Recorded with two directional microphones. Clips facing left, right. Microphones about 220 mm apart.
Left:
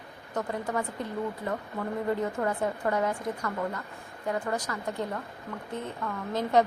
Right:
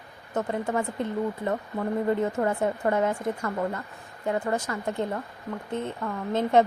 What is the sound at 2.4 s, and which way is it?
Speech, 30° right (ahead or behind).